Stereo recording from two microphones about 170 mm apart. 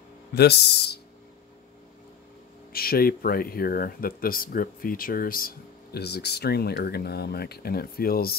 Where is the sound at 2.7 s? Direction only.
60° left (ahead or behind).